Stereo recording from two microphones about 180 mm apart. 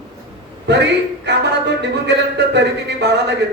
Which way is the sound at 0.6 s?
70° right (ahead or behind).